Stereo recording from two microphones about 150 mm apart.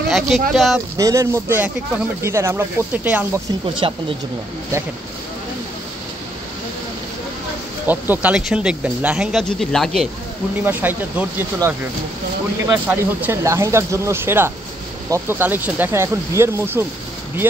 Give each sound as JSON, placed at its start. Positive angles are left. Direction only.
{"t": 0.1, "sound": "speech", "side_deg": 0}
{"t": 0.9, "sound": "speech", "side_deg": -20}
{"t": 3.8, "sound": "speech", "side_deg": -35}
{"t": 7.8, "sound": "speech", "side_deg": -10}
{"t": 10.6, "sound": "speech", "side_deg": -10}